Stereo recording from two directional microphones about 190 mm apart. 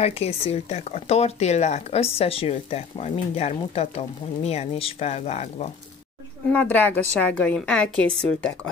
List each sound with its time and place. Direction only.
0.0 s speech: 30° left (ahead or behind)
6.5 s a woman's voice: 10° left (ahead or behind)